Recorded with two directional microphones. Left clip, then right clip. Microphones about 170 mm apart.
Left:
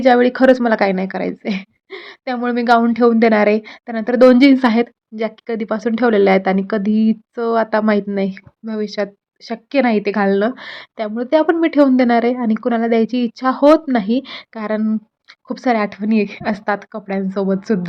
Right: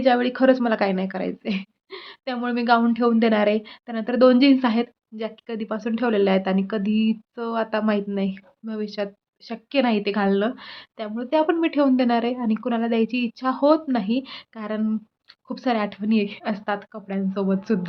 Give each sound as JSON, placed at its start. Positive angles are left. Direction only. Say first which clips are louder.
{"t": 0.0, "sound": "a woman's voice", "louder": "left 7 dB", "side_deg": 40}